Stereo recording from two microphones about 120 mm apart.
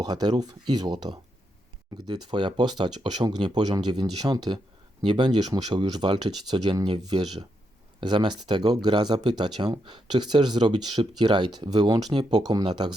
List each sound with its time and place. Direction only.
0.0 s speech: 35° right (ahead or behind)